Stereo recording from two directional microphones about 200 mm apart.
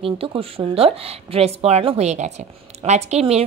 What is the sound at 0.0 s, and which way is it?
Speech, 30° right (ahead or behind).